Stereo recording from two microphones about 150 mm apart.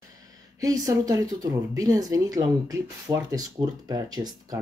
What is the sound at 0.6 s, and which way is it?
Speech, 25° right (ahead or behind).